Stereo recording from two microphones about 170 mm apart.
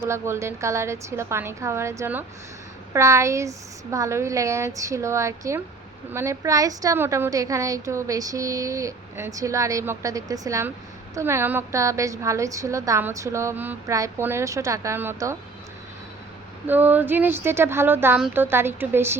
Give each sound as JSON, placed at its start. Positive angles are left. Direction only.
{"t": 0.0, "sound": "a woman's voice", "side_deg": -15}
{"t": 16.6, "sound": "a woman's voice", "side_deg": -10}